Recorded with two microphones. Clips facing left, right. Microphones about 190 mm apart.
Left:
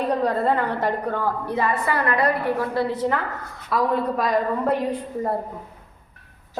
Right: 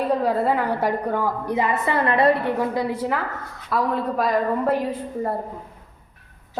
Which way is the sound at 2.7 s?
10° right (ahead or behind).